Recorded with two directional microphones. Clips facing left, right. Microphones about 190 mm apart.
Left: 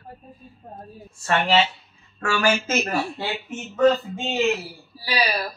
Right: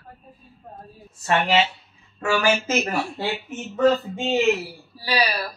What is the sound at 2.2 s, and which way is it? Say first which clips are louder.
Speech: right 1 dB; 15° right (ahead or behind).